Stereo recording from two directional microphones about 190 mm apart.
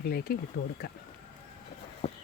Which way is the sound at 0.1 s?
55° left (ahead or behind).